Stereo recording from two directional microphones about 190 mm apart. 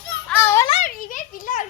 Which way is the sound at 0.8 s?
45° left (ahead or behind).